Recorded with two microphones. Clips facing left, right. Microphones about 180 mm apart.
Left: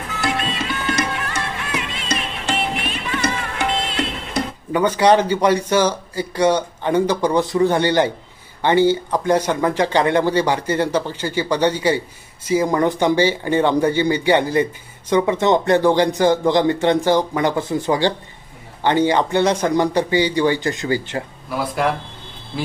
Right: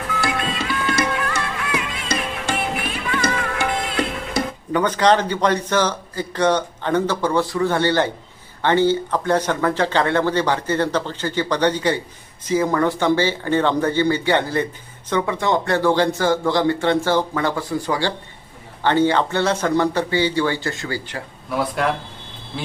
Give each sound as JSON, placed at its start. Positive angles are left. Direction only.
{"t": 0.2, "sound": "music", "side_deg": 25}
{"t": 4.7, "sound": "speech", "side_deg": 10}
{"t": 21.5, "sound": "speech", "side_deg": 0}